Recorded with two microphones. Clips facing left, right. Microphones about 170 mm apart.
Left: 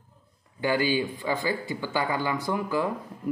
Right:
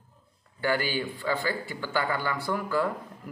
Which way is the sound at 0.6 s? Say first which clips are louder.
Left 3 dB; 15° left (ahead or behind).